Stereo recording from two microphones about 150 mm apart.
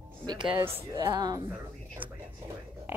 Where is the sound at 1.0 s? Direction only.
25° right (ahead or behind).